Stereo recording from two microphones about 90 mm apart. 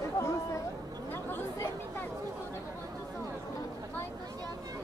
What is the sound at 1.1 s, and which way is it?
Chatter, 25° left (ahead or behind).